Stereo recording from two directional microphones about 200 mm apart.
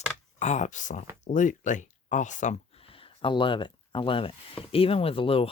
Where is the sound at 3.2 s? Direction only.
25° left (ahead or behind).